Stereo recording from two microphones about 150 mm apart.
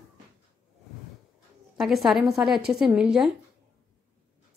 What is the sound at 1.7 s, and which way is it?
A woman's voice, centre (ahead or behind).